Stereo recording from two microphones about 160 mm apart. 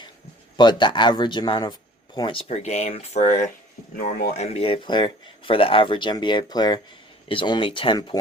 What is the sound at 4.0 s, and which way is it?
Speech, 75° left (ahead or behind).